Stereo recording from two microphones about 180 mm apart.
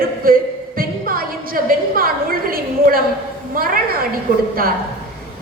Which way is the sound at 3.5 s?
55° right (ahead or behind).